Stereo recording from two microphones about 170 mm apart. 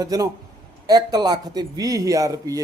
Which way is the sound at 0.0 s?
20° right (ahead or behind).